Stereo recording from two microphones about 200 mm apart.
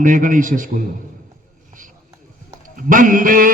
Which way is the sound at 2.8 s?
40° right (ahead or behind).